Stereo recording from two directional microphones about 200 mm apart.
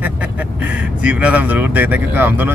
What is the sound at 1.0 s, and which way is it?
Speech, 5° right (ahead or behind).